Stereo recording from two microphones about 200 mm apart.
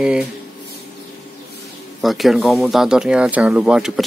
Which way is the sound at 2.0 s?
Centre (ahead or behind).